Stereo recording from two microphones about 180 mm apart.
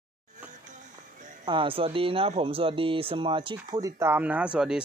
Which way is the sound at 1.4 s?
25° right (ahead or behind).